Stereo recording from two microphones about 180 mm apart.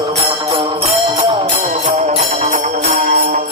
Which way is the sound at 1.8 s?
40° right (ahead or behind).